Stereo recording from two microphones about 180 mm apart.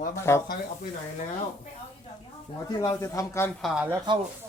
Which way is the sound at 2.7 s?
20° left (ahead or behind).